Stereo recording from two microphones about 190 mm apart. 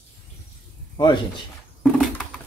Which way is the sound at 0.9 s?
25° left (ahead or behind).